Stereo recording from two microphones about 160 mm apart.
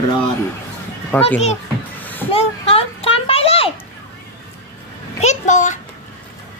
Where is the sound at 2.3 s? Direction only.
35° left (ahead or behind).